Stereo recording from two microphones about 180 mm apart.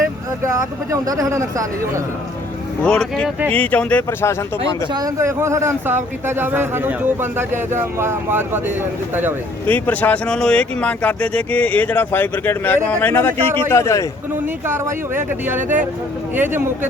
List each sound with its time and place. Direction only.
0.4 s speech: 15° right (ahead or behind)
2.8 s speech: 5° left (ahead or behind)
4.9 s speech: 20° right (ahead or behind)
9.6 s speech: 10° left (ahead or behind)
14.4 s speech: 15° right (ahead or behind)